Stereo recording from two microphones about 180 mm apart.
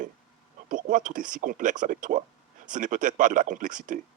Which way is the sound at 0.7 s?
45° right (ahead or behind).